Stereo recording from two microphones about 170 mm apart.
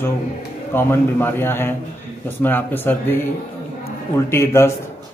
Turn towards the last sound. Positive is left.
turn(degrees=15)  # may be behind; listen again after turning